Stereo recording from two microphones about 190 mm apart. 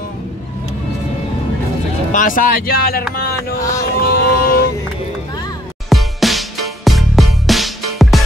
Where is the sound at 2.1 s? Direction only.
45° left (ahead or behind).